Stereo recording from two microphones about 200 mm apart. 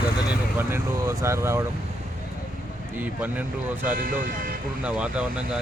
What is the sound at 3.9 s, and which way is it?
Speech, 45° right (ahead or behind).